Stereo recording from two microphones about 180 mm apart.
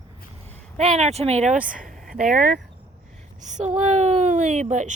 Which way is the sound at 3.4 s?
40° right (ahead or behind).